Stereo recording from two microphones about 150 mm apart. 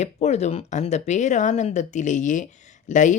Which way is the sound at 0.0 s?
50° left (ahead or behind).